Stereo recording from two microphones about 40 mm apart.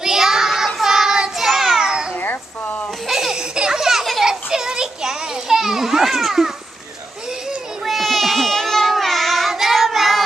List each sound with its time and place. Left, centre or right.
0.0 s child singing: centre
1.8 s cat: right
2.1 s cat: left
3.1 s baby laughter: centre
4.2 s a sound: centre
5.6 s children playing: centre
7.8 s a sound: centre
8.9 s child singing: centre